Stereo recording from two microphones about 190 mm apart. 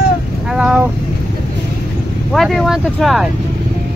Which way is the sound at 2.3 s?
Centre (ahead or behind).